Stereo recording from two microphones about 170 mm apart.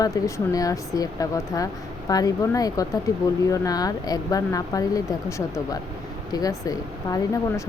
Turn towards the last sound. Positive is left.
turn(degrees=20)  # may be behind; listen again after turning